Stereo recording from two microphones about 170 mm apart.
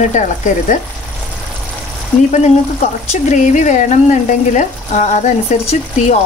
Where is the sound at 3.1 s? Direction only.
45° left (ahead or behind).